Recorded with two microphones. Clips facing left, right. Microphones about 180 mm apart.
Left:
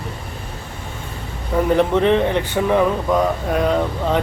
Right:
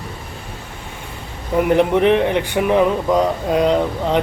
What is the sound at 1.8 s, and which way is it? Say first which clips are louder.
Speech: right 1 dB; 15° right (ahead or behind).